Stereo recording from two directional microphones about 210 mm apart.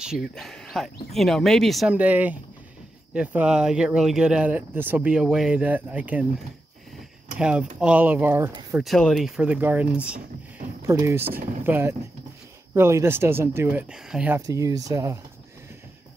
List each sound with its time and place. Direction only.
0.0 s speech: centre (ahead or behind)
7.3 s speech: 5° right (ahead or behind)
8.7 s speech: centre (ahead or behind)
14.4 s speech: 15° right (ahead or behind)